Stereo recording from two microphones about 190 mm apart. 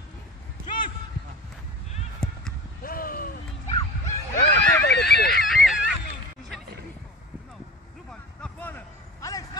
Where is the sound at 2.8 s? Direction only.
50° left (ahead or behind).